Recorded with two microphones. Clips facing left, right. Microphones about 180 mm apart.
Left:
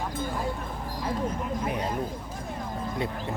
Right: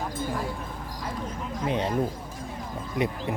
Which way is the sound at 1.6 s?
25° right (ahead or behind).